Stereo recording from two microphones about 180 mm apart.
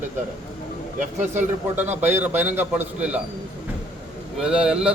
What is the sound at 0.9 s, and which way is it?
Speech, 40° right (ahead or behind).